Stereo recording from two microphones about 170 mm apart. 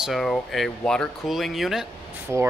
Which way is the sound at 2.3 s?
15° right (ahead or behind).